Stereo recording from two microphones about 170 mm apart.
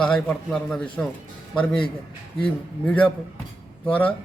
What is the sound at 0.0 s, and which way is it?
A man's voice, 5° left (ahead or behind).